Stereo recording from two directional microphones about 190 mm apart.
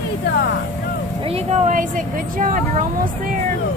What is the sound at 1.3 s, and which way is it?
A woman's voice, 40° right (ahead or behind).